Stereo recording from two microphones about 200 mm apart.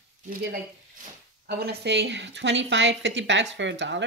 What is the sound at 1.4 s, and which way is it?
A woman's voice, 55° right (ahead or behind).